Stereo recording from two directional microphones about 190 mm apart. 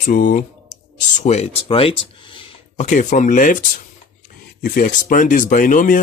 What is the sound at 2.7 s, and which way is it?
Speech, 40° left (ahead or behind).